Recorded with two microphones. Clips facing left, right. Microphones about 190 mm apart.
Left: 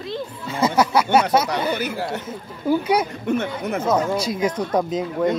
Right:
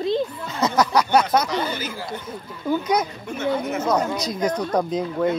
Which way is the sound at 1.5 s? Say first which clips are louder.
Left 3 dB; 65° left (ahead or behind).